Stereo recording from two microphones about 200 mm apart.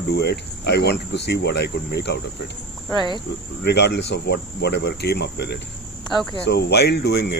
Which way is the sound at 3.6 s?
55° left (ahead or behind).